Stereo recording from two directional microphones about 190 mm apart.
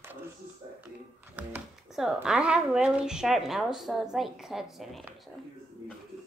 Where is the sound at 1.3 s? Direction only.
5° right (ahead or behind).